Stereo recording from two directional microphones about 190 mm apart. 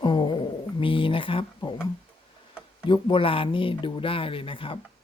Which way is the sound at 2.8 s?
25° left (ahead or behind).